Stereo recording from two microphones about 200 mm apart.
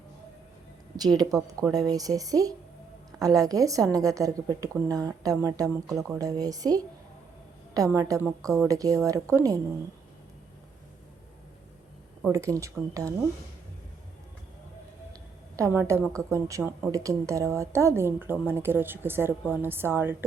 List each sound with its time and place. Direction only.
0.9 s a woman's voice: 20° right (ahead or behind)
12.3 s a woman's voice: 15° right (ahead or behind)
15.1 s a sound: 15° right (ahead or behind)
16.1 s a woman's voice: 15° right (ahead or behind)